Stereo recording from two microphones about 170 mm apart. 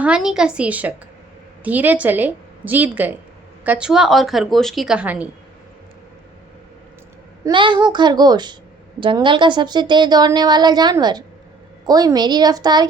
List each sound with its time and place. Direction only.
0.0 s a woman's voice: 5° right (ahead or behind)
7.4 s a woman's voice: 30° right (ahead or behind)